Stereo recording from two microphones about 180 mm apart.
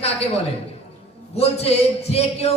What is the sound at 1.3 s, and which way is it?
A man's voice, 35° left (ahead or behind).